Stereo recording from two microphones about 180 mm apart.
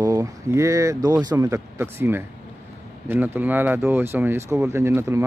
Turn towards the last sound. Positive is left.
turn(degrees=-15)  # may be behind; listen again after turning